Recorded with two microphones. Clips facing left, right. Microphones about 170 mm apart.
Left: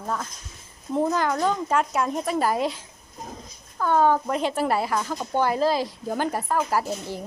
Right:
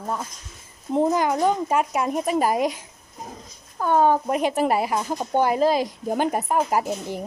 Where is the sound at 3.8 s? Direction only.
15° right (ahead or behind).